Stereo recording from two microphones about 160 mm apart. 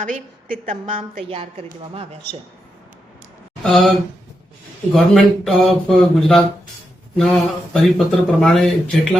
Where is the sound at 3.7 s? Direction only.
Centre (ahead or behind).